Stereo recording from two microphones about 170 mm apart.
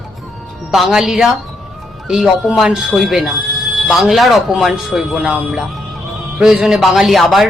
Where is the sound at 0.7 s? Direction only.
Centre (ahead or behind).